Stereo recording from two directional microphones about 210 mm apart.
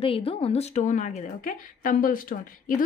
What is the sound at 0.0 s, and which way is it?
A woman's voice, 25° left (ahead or behind).